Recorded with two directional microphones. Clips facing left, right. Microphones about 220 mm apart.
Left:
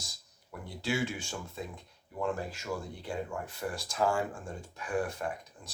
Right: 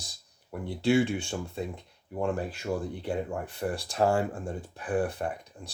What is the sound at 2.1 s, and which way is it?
Speech, 30° right (ahead or behind).